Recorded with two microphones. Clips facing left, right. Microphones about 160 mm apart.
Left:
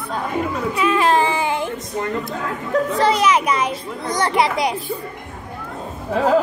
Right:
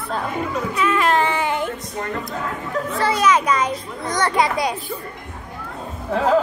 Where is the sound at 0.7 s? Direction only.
20° left (ahead or behind).